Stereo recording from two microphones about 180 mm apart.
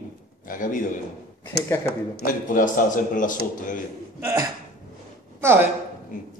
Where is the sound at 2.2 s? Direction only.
50° left (ahead or behind).